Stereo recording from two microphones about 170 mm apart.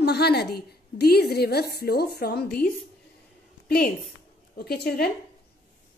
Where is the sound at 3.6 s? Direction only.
65° left (ahead or behind).